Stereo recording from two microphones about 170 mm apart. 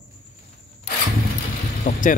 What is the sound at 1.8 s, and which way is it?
Vehicle, 50° left (ahead or behind).